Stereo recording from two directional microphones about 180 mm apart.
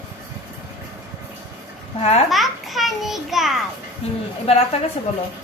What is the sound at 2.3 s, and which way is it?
A child's voice, centre (ahead or behind).